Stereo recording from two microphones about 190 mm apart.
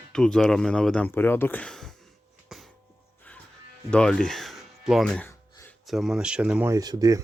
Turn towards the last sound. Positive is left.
turn(degrees=-20)  # may be behind; listen again after turning